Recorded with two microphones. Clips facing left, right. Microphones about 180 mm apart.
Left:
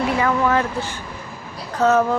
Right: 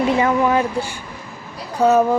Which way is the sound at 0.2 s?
20° right (ahead or behind).